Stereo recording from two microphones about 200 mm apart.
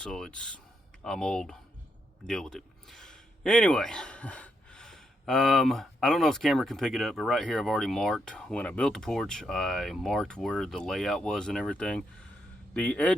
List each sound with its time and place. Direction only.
0.0 s speech: 5° left (ahead or behind)